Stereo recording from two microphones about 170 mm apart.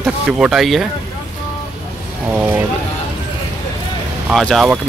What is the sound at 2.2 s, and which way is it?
Vehicle, 10° right (ahead or behind).